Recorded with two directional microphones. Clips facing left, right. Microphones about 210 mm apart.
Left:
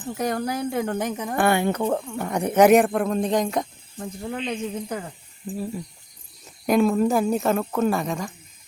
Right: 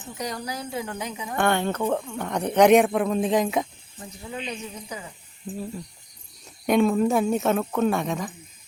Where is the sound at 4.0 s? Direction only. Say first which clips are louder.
Left 5 dB; 60° left (ahead or behind).